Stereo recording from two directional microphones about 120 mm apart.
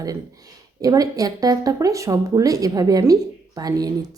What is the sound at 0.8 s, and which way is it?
A woman's voice, 30° right (ahead or behind).